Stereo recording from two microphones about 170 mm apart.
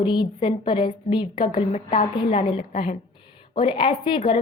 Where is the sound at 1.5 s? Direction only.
40° left (ahead or behind).